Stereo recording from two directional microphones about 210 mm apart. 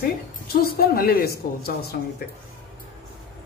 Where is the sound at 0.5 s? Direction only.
45° left (ahead or behind).